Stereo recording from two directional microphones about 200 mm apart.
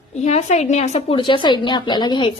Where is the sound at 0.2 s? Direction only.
35° left (ahead or behind).